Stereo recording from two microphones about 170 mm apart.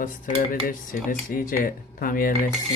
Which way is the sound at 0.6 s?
55° left (ahead or behind).